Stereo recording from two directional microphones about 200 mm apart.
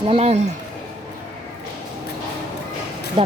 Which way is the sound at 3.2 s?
25° right (ahead or behind).